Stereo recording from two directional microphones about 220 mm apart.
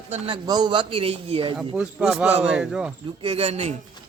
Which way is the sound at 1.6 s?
5° right (ahead or behind).